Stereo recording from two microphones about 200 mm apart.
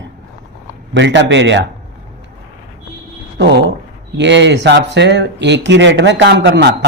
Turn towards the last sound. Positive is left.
turn(degrees=-55)  # may be behind; listen again after turning